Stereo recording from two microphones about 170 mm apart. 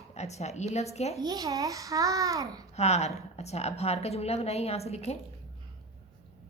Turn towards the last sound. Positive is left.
turn(degrees=40)  # may be behind; listen again after turning